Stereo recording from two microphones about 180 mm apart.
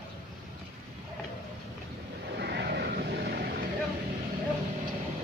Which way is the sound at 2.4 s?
65° right (ahead or behind).